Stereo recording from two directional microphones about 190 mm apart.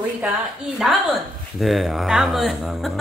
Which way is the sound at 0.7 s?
Centre (ahead or behind).